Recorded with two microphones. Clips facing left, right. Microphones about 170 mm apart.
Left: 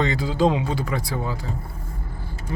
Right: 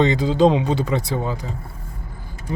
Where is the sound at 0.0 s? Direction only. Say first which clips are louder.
Right 5 dB; 20° right (ahead or behind).